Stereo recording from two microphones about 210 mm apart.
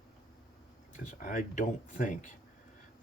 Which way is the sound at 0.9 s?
35° left (ahead or behind).